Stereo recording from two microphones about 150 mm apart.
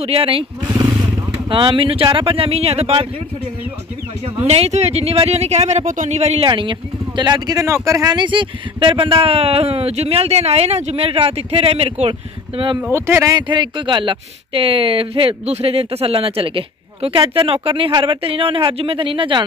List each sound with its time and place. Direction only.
0.0 s speech: 40° right (ahead or behind)
0.7 s wild animals: 25° right (ahead or behind)
1.5 s speech: 35° right (ahead or behind)
4.5 s speech: 45° right (ahead or behind)
6.4 s speech: 35° right (ahead or behind)
12.9 s speech: 20° right (ahead or behind); by 19.4 s 35° right (ahead or behind)